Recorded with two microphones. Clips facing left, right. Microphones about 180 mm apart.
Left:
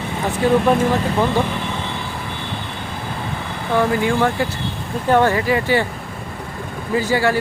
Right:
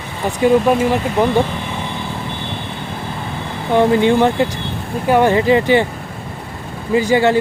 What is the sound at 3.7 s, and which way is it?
Speech, 25° right (ahead or behind).